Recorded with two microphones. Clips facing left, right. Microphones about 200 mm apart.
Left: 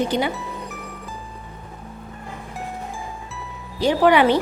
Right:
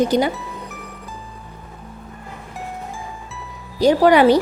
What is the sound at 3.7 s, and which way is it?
Speech, 40° right (ahead or behind).